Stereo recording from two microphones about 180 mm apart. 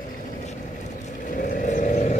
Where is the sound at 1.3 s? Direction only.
45° left (ahead or behind).